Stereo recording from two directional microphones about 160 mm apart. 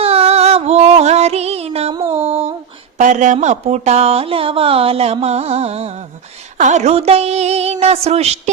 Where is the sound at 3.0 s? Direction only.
50° right (ahead or behind).